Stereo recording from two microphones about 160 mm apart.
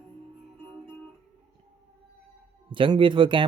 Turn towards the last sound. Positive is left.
turn(degrees=-30)  # may be behind; listen again after turning